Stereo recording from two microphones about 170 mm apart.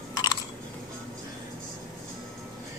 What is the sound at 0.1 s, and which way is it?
Chewing, 25° left (ahead or behind).